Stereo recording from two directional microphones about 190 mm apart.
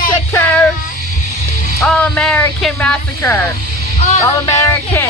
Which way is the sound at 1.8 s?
5° left (ahead or behind).